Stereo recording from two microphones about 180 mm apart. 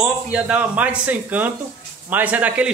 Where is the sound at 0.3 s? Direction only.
10° right (ahead or behind).